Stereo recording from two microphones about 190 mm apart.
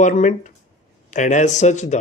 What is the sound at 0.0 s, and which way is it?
A man's voice, 40° left (ahead or behind).